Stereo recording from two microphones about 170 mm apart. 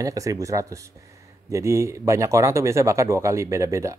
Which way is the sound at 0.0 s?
20° right (ahead or behind).